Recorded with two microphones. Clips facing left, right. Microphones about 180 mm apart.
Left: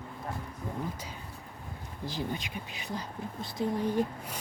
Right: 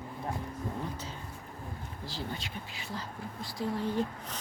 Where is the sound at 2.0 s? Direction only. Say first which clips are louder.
Left 5 dB; 15° left (ahead or behind).